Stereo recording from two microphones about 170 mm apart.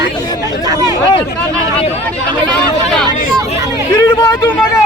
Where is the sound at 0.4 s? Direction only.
20° right (ahead or behind).